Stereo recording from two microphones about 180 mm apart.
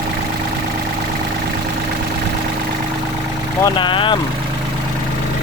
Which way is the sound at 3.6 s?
25° left (ahead or behind).